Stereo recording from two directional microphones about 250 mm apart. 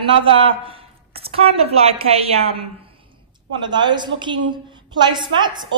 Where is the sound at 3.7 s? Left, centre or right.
Centre.